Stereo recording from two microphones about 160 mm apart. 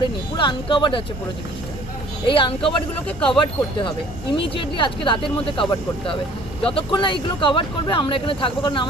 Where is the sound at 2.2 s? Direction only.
35° left (ahead or behind).